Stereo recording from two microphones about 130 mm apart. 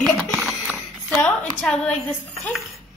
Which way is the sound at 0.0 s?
Centre (ahead or behind).